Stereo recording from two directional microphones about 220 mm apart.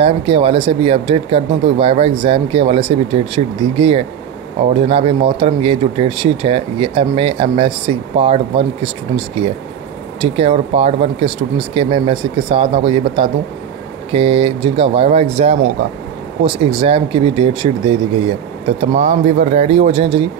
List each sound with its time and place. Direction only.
0.0 s speech: 25° right (ahead or behind)
14.1 s speech: 25° right (ahead or behind)